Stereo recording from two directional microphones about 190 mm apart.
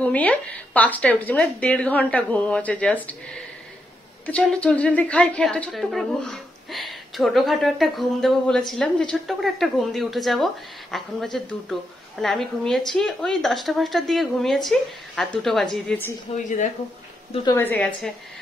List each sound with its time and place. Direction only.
0.0 s a woman's voice: 10° left (ahead or behind)
16.4 s speech: 40° left (ahead or behind)
17.5 s speech: 10° left (ahead or behind)